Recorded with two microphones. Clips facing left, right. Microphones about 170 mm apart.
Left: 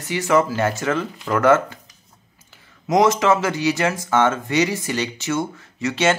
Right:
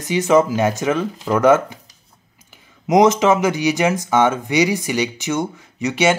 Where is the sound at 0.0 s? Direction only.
20° right (ahead or behind).